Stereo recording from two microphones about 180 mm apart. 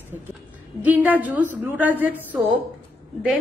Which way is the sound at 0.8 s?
10° right (ahead or behind).